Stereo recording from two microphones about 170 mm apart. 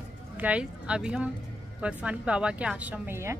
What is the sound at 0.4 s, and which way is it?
A woman's voice, 5° right (ahead or behind).